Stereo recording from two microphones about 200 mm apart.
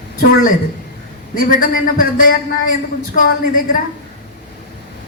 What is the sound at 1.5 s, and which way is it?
A woman's voice, 45° left (ahead or behind).